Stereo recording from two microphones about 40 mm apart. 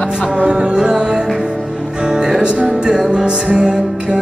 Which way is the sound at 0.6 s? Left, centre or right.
Right.